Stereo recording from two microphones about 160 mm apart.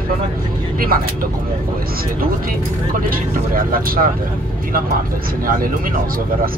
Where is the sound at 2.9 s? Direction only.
60° right (ahead or behind).